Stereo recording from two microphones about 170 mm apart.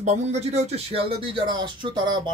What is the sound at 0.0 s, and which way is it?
Speech, 40° right (ahead or behind).